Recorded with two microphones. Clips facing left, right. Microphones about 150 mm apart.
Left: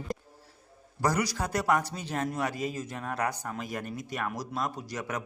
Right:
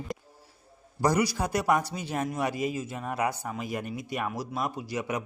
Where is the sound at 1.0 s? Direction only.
10° right (ahead or behind).